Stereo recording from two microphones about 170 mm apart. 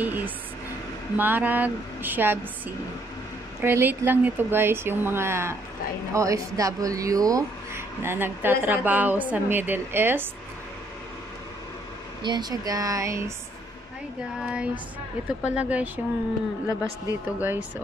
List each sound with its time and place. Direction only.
0.0 s music: 10° right (ahead or behind)
1.1 s speech: 10° right (ahead or behind)
3.6 s speech: 10° right (ahead or behind)
12.2 s speech: 25° right (ahead or behind)
14.4 s speech: 5° right (ahead or behind)